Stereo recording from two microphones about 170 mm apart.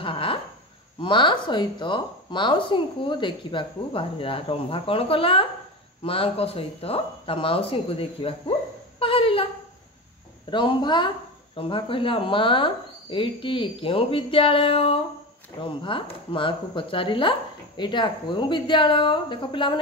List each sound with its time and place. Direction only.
0.0 s a sound: 30° left (ahead or behind)
1.0 s speech: 30° left (ahead or behind)
10.5 s speech: 30° left (ahead or behind)